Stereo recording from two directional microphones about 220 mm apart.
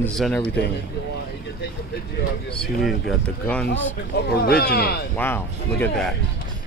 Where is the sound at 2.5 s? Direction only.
Centre (ahead or behind).